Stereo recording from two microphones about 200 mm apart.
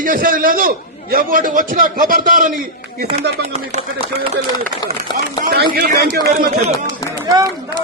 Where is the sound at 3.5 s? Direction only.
30° right (ahead or behind).